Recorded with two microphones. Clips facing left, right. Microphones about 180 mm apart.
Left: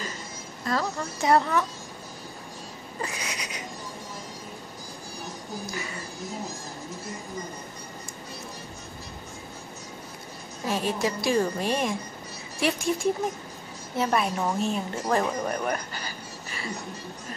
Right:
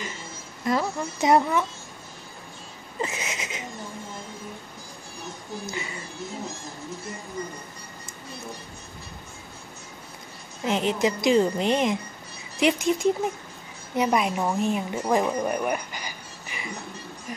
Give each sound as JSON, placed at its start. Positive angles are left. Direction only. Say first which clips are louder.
{"t": 0.7, "sound": "a woman's voice", "louder": "right 3 dB", "side_deg": -20}
{"t": 3.0, "sound": "a sound", "louder": "right 4 dB", "side_deg": -25}
{"t": 5.7, "sound": "a woman's voice", "louder": "right 1 dB", "side_deg": -25}
{"t": 10.6, "sound": "a woman's voice", "louder": "right 3 dB", "side_deg": -20}